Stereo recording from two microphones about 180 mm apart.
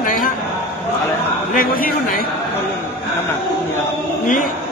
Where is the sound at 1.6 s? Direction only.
50° left (ahead or behind).